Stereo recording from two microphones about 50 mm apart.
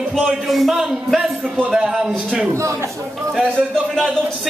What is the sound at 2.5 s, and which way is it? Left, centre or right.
Speech, right.